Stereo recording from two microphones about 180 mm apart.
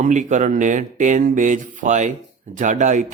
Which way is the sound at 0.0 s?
45° right (ahead or behind).